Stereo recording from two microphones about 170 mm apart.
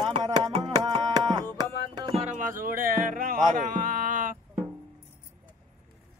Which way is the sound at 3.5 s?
55° right (ahead or behind).